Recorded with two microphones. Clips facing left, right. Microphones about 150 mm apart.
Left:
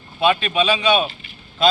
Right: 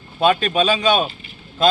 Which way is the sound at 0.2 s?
40° right (ahead or behind).